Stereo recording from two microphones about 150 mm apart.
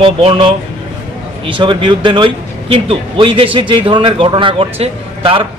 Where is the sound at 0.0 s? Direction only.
35° right (ahead or behind).